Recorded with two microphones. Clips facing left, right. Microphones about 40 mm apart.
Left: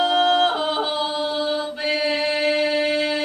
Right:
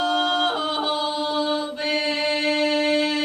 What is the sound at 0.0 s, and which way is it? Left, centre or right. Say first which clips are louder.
A capella: left 4 dB; centre.